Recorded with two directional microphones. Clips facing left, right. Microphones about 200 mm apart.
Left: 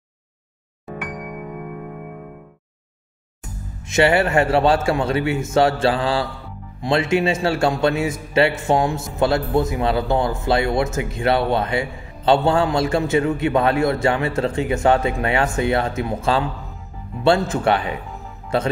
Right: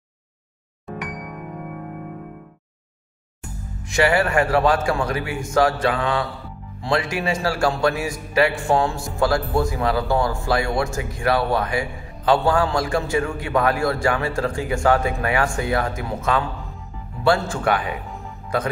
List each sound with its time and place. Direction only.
3.9 s a man's voice: 25° left (ahead or behind)